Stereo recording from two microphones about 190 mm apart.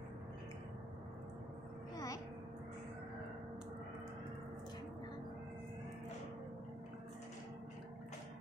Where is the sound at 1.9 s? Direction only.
20° left (ahead or behind).